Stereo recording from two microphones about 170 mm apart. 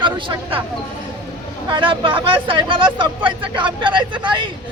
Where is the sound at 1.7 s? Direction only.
30° right (ahead or behind).